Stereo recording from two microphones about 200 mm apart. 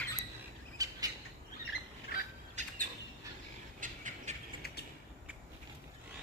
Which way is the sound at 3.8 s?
40° right (ahead or behind).